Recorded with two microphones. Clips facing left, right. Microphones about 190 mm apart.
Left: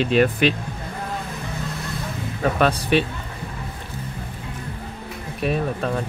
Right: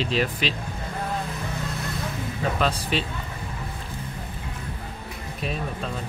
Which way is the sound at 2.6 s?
60° left (ahead or behind).